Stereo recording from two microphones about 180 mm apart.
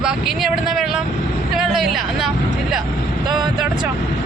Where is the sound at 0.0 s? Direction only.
Centre (ahead or behind).